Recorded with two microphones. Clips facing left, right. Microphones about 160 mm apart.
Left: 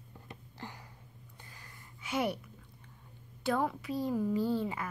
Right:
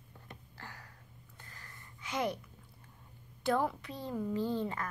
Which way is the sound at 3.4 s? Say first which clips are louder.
Even; centre (ahead or behind).